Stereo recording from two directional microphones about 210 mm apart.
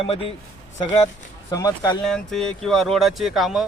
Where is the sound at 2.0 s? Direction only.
Centre (ahead or behind).